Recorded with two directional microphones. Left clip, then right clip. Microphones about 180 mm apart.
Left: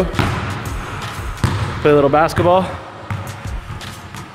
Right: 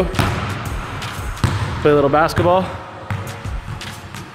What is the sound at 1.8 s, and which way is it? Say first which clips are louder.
Speech: left 1 dB; 10° left (ahead or behind).